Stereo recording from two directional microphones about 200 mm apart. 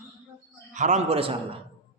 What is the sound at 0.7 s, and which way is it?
Speech, 35° right (ahead or behind).